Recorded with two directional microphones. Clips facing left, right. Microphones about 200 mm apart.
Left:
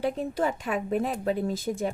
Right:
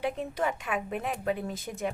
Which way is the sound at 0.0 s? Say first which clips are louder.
Left 3 dB; 35° left (ahead or behind).